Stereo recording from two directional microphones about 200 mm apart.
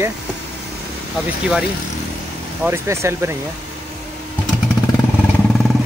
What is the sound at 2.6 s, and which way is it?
Speech, 15° right (ahead or behind).